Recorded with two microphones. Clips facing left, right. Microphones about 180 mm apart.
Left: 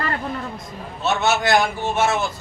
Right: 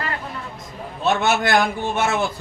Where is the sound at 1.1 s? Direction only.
55° right (ahead or behind).